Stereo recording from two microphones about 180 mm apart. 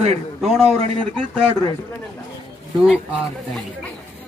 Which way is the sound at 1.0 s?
10° left (ahead or behind).